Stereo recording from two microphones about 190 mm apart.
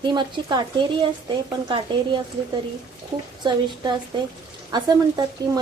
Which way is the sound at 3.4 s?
25° right (ahead or behind).